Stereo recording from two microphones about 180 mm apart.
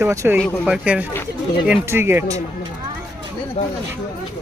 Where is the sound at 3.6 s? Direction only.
35° left (ahead or behind).